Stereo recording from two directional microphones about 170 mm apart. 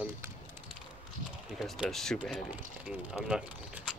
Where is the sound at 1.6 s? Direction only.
Centre (ahead or behind).